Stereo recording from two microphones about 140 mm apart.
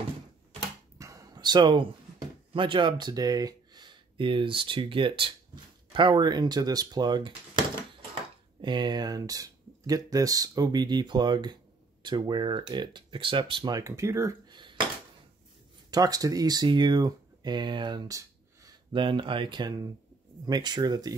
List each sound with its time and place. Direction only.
0.9 s speech: 25° right (ahead or behind)
13.7 s speech: 20° right (ahead or behind)
14.5 s dishes: 35° right (ahead or behind)
15.9 s speech: 25° right (ahead or behind)
18.9 s speech: 35° right (ahead or behind)